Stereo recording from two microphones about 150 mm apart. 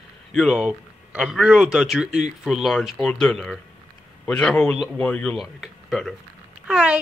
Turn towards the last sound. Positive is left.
turn(degrees=-5)  # may be behind; listen again after turning